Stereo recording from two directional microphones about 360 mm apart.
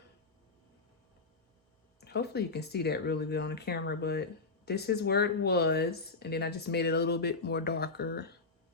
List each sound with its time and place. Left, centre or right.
2.0 s speech: left